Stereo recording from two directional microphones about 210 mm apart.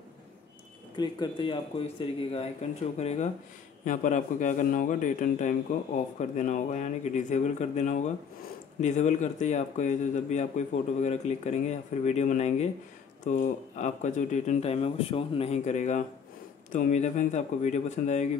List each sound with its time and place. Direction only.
0.9 s a man's voice: 20° left (ahead or behind)